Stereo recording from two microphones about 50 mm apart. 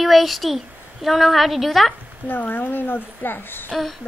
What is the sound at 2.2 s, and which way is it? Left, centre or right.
A woman's voice, left.